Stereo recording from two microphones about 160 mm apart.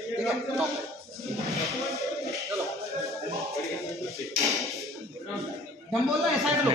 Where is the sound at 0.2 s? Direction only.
Centre (ahead or behind).